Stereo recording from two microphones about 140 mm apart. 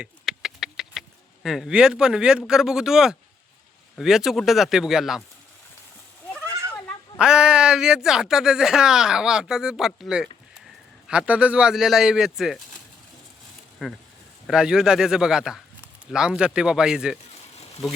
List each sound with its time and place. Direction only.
0.0 s a sound: centre (ahead or behind)
2.5 s speech: 5° right (ahead or behind)
7.2 s speech: 5° right (ahead or behind)
13.8 s speech: centre (ahead or behind)